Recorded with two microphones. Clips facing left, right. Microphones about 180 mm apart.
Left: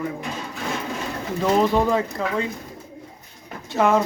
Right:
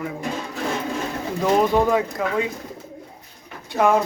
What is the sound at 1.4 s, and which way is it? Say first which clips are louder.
Speech: right 1 dB; 5° right (ahead or behind).